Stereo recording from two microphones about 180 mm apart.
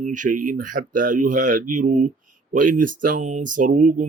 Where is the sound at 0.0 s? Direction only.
45° right (ahead or behind).